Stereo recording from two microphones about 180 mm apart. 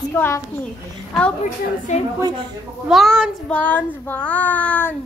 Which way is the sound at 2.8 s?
Centre (ahead or behind).